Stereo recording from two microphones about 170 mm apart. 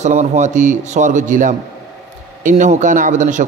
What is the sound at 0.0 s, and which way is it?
Music, 45° right (ahead or behind).